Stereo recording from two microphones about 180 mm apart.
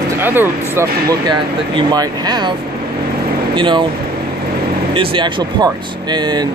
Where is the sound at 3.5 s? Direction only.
25° right (ahead or behind).